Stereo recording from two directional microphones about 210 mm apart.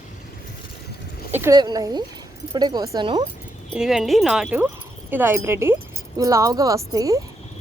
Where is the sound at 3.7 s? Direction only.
Centre (ahead or behind).